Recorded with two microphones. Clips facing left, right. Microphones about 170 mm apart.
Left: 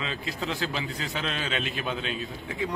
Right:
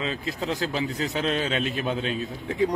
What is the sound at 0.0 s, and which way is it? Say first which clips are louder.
A man's voice: right 3 dB; 40° right (ahead or behind).